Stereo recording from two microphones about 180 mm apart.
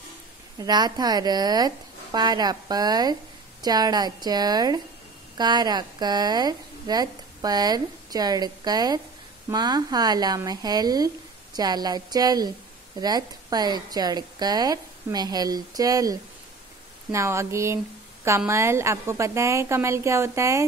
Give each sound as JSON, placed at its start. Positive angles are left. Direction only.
{"t": 0.6, "sound": "a woman's voice", "side_deg": -20}